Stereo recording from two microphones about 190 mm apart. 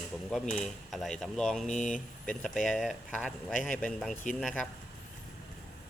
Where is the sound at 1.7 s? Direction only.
40° left (ahead or behind).